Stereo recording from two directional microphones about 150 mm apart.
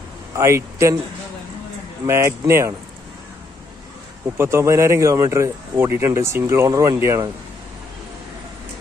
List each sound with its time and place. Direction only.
0.4 s a man's voice: 20° right (ahead or behind)
2.0 s speech: 15° right (ahead or behind)
4.4 s speech: 15° right (ahead or behind)